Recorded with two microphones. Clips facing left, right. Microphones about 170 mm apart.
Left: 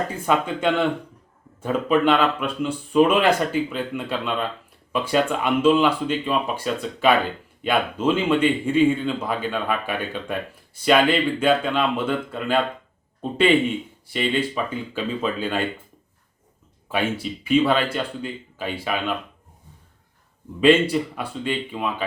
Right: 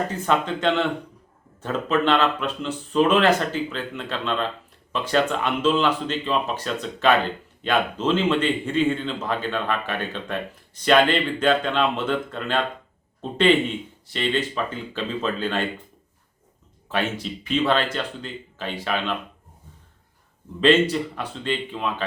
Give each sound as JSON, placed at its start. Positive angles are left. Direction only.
{"t": 0.1, "sound": "speech", "side_deg": 10}
{"t": 16.9, "sound": "speech", "side_deg": 10}
{"t": 20.6, "sound": "speech", "side_deg": 10}